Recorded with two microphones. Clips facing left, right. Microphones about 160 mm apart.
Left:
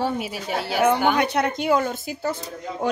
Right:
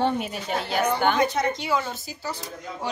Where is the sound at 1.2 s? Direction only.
65° left (ahead or behind).